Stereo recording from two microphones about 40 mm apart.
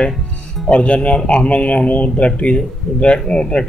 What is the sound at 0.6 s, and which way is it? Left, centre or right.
Speech, left.